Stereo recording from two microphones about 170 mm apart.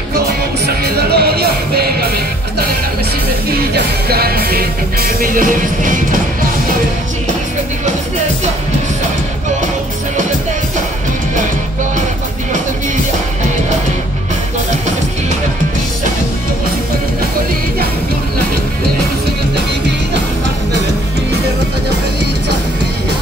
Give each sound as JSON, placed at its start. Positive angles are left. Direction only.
{"t": 0.7, "sound": "music", "side_deg": -70}
{"t": 3.7, "sound": "music", "side_deg": -65}